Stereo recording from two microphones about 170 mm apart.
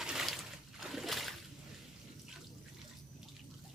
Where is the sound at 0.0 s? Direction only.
Centre (ahead or behind).